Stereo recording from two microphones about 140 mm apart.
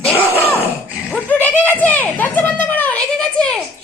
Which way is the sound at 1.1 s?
10° left (ahead or behind).